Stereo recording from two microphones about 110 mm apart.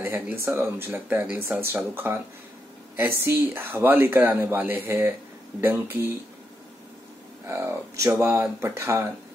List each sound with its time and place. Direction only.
0.0 s speech: 20° right (ahead or behind)
7.4 s speech: 25° right (ahead or behind)